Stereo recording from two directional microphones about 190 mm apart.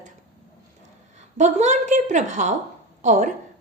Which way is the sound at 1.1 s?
40° right (ahead or behind).